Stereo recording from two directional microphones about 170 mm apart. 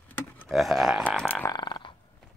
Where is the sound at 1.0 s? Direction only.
5° left (ahead or behind).